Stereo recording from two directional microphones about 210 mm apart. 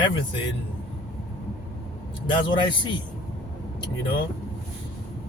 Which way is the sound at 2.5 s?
20° left (ahead or behind).